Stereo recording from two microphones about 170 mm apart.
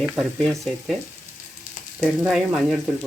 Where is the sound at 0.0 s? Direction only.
Centre (ahead or behind).